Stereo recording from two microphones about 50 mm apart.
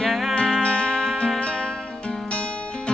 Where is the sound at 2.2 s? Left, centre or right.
Left.